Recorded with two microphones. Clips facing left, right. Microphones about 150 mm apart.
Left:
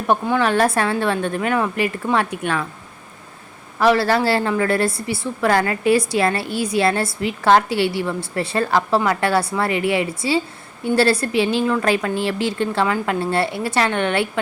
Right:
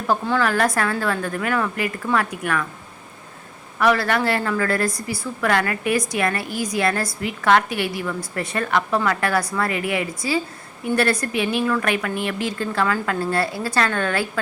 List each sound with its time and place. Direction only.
0.1 s a woman's voice: 20° left (ahead or behind)
3.8 s a woman's voice: 30° left (ahead or behind)